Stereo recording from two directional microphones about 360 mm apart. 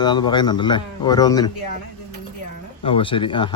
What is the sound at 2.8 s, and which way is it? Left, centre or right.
Speech, centre.